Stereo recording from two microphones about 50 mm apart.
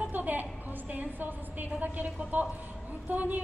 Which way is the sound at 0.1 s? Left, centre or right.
Right.